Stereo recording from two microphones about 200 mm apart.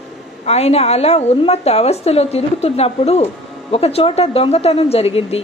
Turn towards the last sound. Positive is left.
turn(degrees=30)  # may be behind; listen again after turning